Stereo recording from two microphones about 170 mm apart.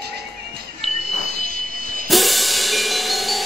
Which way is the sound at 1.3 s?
60° right (ahead or behind).